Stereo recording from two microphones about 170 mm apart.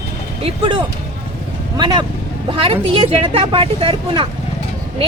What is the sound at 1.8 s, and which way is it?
Speech, 25° right (ahead or behind).